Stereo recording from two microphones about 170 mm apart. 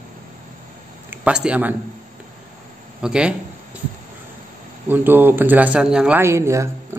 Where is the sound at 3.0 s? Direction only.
5° right (ahead or behind).